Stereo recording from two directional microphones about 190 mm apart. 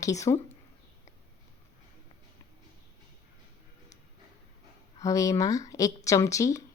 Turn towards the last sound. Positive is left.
turn(degrees=15)  # may be behind; listen again after turning